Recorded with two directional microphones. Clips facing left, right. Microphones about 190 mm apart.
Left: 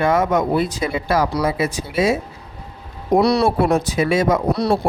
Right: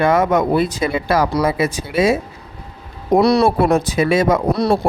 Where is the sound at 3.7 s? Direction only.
75° right (ahead or behind).